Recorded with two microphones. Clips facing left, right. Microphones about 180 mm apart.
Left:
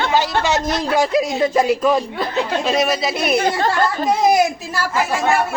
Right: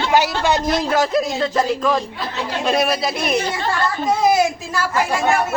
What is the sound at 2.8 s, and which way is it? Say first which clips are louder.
Speech: left 1 dB; centre (ahead or behind).